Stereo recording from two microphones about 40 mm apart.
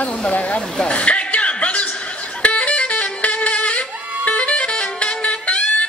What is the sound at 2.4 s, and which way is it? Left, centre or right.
Music, left.